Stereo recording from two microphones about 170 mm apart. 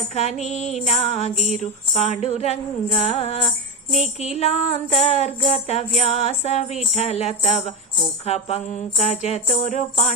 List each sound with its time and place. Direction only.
0.1 s music: 40° left (ahead or behind)